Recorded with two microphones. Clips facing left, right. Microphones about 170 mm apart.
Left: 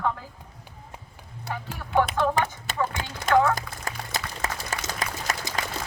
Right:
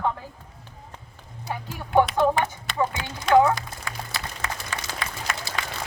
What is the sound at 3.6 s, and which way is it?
Music, 45° left (ahead or behind).